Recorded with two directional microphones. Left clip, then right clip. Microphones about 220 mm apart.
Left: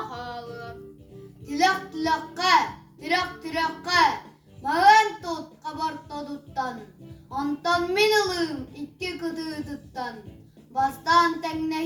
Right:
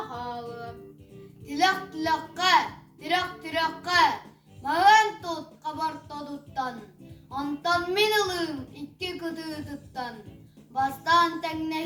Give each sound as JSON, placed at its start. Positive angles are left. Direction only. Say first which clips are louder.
{"t": 0.1, "sound": "music", "louder": "even", "side_deg": 15}
{"t": 1.5, "sound": "a sound", "louder": "left 2 dB", "side_deg": -15}
{"t": 7.3, "sound": "child singing", "louder": "left 2 dB", "side_deg": -15}